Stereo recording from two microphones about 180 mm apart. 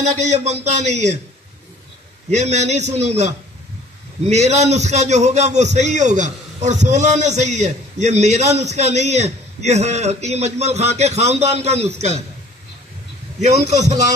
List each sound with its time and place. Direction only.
0.2 s a man's voice: 40° right (ahead or behind)
2.3 s a man's voice: 40° right (ahead or behind)
13.4 s a man's voice: 40° right (ahead or behind)